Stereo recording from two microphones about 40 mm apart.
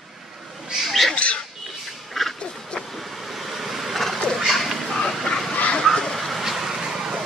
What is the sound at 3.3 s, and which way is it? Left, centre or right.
Vehicle, centre.